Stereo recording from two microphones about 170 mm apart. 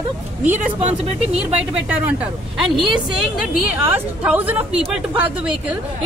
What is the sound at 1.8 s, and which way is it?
Speech, 10° right (ahead or behind).